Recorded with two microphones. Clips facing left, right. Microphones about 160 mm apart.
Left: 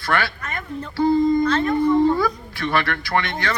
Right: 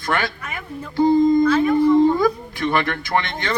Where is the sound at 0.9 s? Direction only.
20° right (ahead or behind).